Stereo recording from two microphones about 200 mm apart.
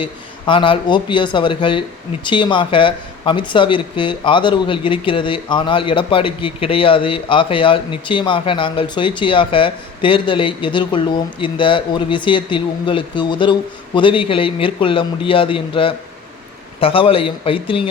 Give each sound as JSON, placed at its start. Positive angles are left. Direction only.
{"t": 0.0, "sound": "speech", "side_deg": 25}